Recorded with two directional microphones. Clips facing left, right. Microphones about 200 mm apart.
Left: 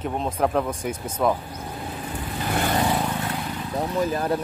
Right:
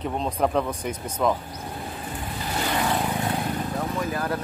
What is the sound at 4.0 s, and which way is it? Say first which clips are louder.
Speech: left 7 dB; 30° left (ahead or behind).